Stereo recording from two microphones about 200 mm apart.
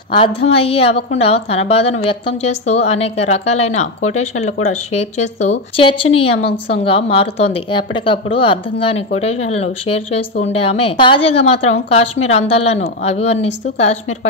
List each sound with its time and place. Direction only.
0.4 s a woman's voice: 30° left (ahead or behind)
4.0 s speech: 90° left
4.9 s a woman's voice: 35° left (ahead or behind)